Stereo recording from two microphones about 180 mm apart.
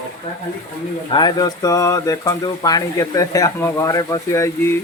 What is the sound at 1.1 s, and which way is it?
Speech, 25° left (ahead or behind).